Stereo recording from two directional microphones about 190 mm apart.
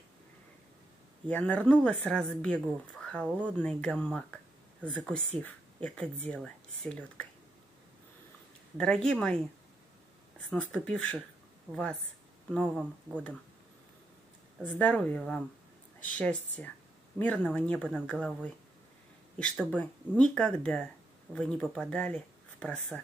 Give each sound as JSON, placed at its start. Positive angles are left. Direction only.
{"t": 1.3, "sound": "speech", "side_deg": 5}
{"t": 3.3, "sound": "speech", "side_deg": -5}
{"t": 3.5, "sound": "speech", "side_deg": 5}
{"t": 8.7, "sound": "speech", "side_deg": 5}
{"t": 10.5, "sound": "speech", "side_deg": 5}
{"t": 14.8, "sound": "speech", "side_deg": 10}